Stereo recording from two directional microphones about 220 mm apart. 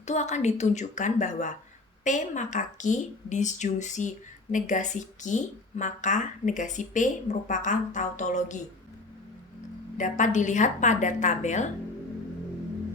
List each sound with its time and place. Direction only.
0.0 s a woman's voice: 30° left (ahead or behind)
10.0 s a woman's voice: 35° left (ahead or behind)